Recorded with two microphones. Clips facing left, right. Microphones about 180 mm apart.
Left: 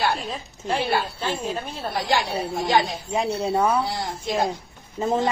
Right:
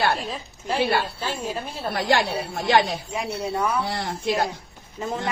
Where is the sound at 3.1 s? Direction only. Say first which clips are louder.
Left 4 dB; 30° left (ahead or behind).